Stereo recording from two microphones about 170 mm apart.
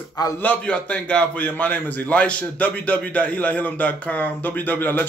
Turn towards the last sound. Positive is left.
turn(degrees=10)  # may be behind; listen again after turning